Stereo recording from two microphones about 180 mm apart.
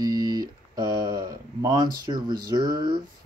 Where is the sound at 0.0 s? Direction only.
20° right (ahead or behind).